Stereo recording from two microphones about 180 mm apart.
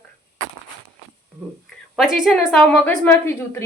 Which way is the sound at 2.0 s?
Centre (ahead or behind).